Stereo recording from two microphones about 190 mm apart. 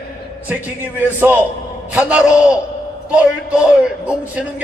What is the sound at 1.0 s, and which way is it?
Music, 10° right (ahead or behind).